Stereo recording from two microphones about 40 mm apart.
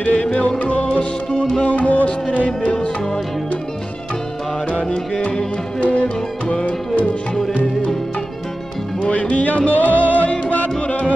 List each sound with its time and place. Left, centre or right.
0.0 s music: left
1.4 s music: left
1.7 s music: left
5.8 s music: left
9.0 s music: left